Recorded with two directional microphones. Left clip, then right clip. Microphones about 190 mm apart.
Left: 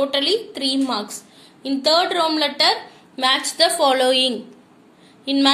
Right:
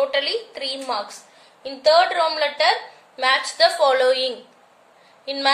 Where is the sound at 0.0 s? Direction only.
35° left (ahead or behind).